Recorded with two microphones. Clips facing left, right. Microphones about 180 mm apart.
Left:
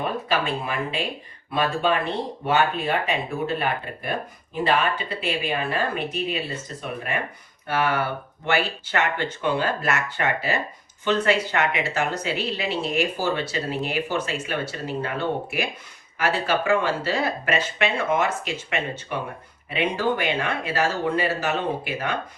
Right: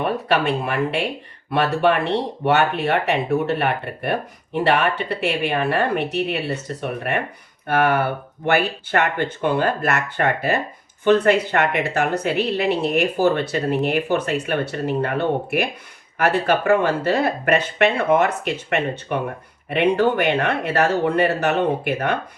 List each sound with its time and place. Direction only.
0.0 s a woman's voice: 65° right (ahead or behind)